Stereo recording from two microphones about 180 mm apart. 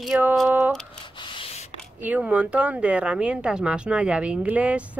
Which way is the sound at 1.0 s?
30° left (ahead or behind).